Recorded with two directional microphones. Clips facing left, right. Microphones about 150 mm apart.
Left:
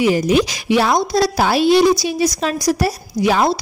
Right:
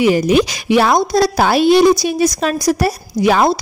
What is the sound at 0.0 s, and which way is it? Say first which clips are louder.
Speech: right 2 dB; 60° right (ahead or behind).